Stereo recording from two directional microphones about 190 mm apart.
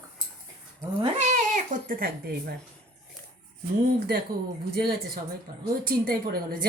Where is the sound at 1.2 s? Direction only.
40° right (ahead or behind).